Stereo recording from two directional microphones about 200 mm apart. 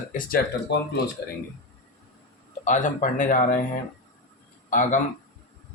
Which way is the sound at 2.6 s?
40° left (ahead or behind).